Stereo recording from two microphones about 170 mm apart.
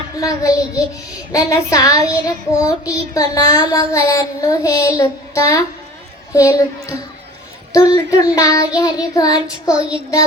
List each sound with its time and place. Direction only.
0.2 s child singing: 20° left (ahead or behind)
7.7 s child singing: 20° left (ahead or behind)